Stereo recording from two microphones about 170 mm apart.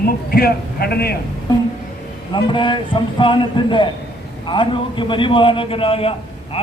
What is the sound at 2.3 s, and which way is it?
A man's voice, 30° left (ahead or behind).